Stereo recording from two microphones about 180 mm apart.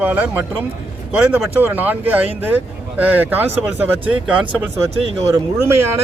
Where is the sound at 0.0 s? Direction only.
10° right (ahead or behind).